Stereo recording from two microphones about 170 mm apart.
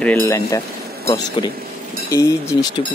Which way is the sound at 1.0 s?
25° left (ahead or behind).